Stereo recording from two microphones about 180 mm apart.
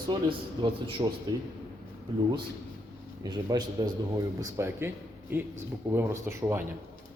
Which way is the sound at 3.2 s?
20° right (ahead or behind).